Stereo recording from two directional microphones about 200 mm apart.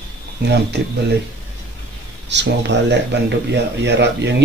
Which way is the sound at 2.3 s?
60° right (ahead or behind).